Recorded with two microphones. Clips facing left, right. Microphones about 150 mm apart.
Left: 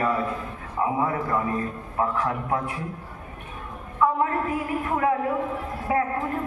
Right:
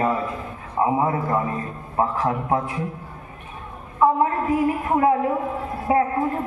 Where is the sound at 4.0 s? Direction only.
25° right (ahead or behind).